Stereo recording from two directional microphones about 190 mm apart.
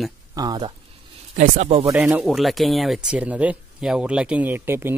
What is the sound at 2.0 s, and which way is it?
Speech, 5° right (ahead or behind).